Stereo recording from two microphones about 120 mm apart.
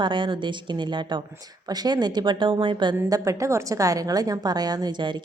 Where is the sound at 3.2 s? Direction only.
25° right (ahead or behind).